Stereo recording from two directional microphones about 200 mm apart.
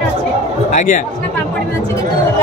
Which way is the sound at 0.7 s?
40° left (ahead or behind).